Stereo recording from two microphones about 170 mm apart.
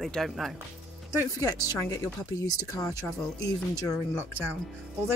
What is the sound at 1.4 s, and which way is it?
Speech, 20° left (ahead or behind).